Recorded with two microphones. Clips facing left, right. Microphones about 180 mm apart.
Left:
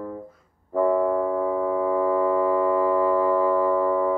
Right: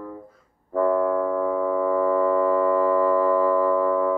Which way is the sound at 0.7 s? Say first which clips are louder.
Even; 15° left (ahead or behind).